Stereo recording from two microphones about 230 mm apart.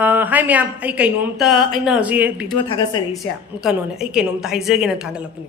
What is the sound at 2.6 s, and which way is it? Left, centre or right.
Speech, centre.